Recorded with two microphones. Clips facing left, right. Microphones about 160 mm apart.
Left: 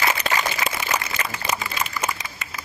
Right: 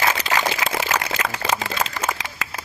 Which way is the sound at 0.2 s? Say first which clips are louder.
Right 2 dB; 90° right.